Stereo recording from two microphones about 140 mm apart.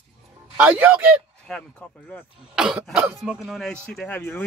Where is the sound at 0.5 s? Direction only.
10° right (ahead or behind).